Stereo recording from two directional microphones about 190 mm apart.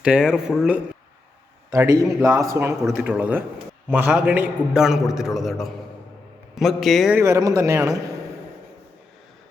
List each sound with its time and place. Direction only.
0.0 s a man's voice: 5° right (ahead or behind)
1.7 s a man's voice: 15° right (ahead or behind); by 7.2 s centre (ahead or behind)
7.2 s speech: 15° right (ahead or behind)